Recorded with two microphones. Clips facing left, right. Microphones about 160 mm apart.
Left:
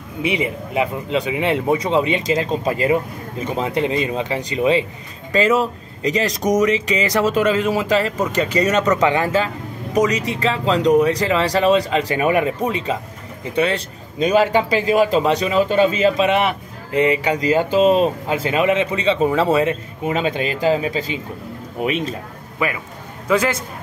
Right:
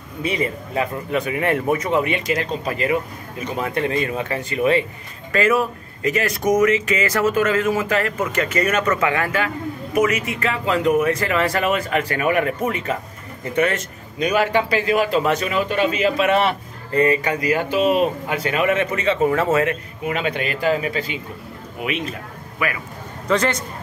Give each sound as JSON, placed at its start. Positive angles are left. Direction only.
{"t": 0.2, "sound": "speech", "side_deg": 10}
{"t": 10.4, "sound": "speech", "side_deg": 20}
{"t": 14.2, "sound": "speech", "side_deg": 25}
{"t": 15.5, "sound": "speech", "side_deg": 30}
{"t": 16.3, "sound": "speech", "side_deg": 10}
{"t": 21.7, "sound": "speech", "side_deg": 40}
{"t": 22.6, "sound": "speech", "side_deg": 25}
{"t": 23.2, "sound": "a man's voice", "side_deg": 5}